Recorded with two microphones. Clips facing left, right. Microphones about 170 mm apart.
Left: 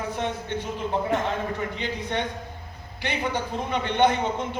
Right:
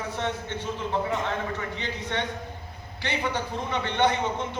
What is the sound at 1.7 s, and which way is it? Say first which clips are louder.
A man's voice: left 2 dB; 15° left (ahead or behind).